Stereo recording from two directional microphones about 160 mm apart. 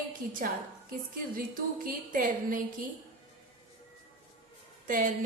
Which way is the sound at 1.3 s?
60° right (ahead or behind).